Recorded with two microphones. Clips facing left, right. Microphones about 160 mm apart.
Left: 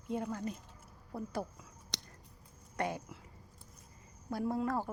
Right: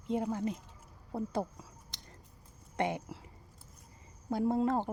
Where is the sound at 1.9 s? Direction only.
90° left.